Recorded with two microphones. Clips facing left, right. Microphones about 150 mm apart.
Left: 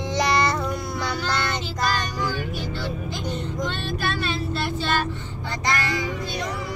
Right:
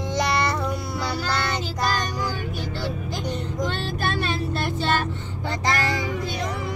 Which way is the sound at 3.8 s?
45° right (ahead or behind).